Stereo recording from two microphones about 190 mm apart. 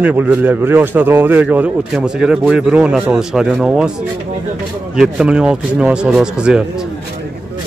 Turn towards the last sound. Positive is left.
turn(degrees=-5)  # may be behind; listen again after turning